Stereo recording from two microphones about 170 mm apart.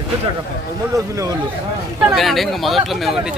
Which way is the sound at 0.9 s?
20° right (ahead or behind).